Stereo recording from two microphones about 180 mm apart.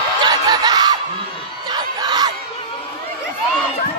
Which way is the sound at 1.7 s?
20° right (ahead or behind).